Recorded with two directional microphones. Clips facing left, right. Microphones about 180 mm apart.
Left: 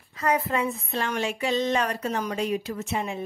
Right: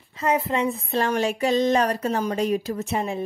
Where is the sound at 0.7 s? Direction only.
35° right (ahead or behind).